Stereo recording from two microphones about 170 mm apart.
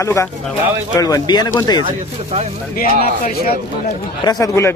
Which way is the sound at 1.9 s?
35° right (ahead or behind).